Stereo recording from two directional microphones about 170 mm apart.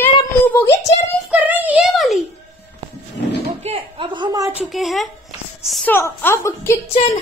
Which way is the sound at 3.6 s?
35° right (ahead or behind).